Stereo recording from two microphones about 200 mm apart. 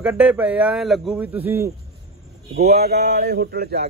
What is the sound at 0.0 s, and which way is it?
A man's voice, 5° right (ahead or behind).